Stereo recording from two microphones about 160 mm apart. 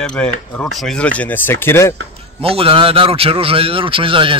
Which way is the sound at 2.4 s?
35° right (ahead or behind).